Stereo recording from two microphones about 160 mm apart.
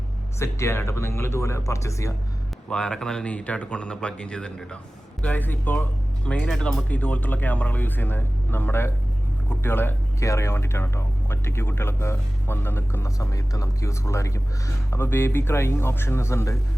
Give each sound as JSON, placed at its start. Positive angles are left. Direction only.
{"t": 0.3, "sound": "speech", "side_deg": 15}
{"t": 2.6, "sound": "speech", "side_deg": 5}